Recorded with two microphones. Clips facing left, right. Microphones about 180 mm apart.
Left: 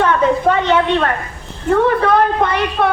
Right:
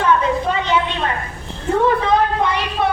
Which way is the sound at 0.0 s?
60° left (ahead or behind).